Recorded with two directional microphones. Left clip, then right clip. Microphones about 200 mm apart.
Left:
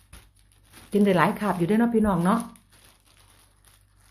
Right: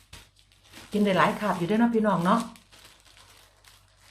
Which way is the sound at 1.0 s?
45° left (ahead or behind).